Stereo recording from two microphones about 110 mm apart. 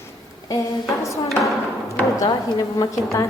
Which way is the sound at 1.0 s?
30° left (ahead or behind).